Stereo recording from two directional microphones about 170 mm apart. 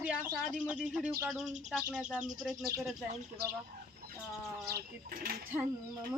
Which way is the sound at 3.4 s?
70° right (ahead or behind).